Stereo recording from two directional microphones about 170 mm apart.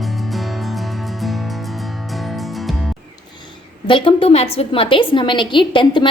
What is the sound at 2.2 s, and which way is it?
Music, centre (ahead or behind).